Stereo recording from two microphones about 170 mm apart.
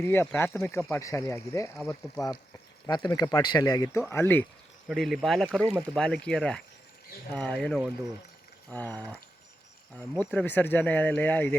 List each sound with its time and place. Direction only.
0.0 s speech: 15° left (ahead or behind)
4.9 s speech: centre (ahead or behind)